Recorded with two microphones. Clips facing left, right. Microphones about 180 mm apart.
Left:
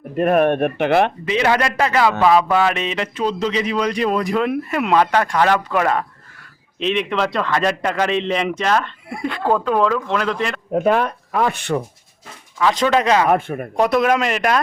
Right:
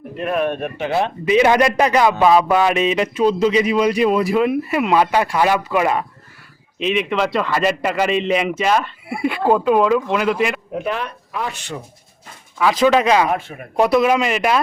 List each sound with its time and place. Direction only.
0.2 s speech: 50° left (ahead or behind)
1.2 s a man's voice: 15° right (ahead or behind)
10.8 s speech: 45° left (ahead or behind)
12.5 s a man's voice: 10° right (ahead or behind)
13.3 s speech: 55° left (ahead or behind)
13.7 s speech: 5° right (ahead or behind)